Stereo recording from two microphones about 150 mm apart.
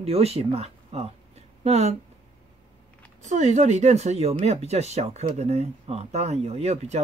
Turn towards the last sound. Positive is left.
turn(degrees=-45)  # may be behind; listen again after turning